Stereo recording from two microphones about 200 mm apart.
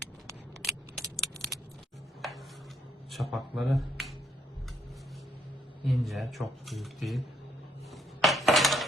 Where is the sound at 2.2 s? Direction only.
Centre (ahead or behind).